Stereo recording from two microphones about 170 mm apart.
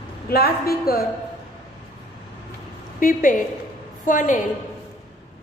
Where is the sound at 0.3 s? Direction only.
65° left (ahead or behind).